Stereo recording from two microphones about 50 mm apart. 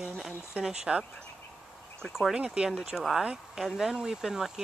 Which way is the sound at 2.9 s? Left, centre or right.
Centre.